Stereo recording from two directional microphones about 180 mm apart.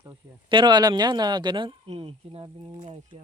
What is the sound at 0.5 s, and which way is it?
Speech, 25° right (ahead or behind).